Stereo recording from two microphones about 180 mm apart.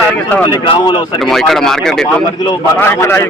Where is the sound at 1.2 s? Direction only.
Centre (ahead or behind).